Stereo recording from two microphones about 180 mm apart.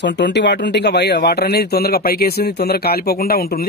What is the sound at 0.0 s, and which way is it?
Speech, 75° left (ahead or behind).